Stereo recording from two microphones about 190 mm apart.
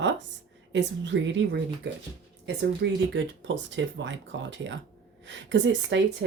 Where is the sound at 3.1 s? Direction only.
75° right (ahead or behind).